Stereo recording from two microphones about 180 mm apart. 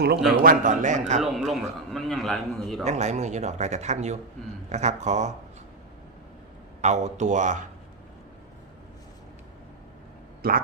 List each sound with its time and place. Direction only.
0.4 s a man's voice: 45° right (ahead or behind)
1.2 s a man's voice: centre (ahead or behind)
2.8 s speech: 40° right (ahead or behind)
6.8 s speech: 40° right (ahead or behind)
10.4 s speech: 55° right (ahead or behind)